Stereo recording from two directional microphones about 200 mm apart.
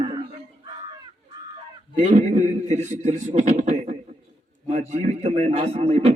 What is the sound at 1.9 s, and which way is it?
A man's voice, 40° right (ahead or behind).